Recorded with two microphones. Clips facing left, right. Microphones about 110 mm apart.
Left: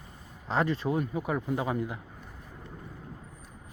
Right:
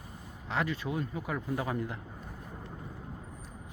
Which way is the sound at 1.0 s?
20° left (ahead or behind).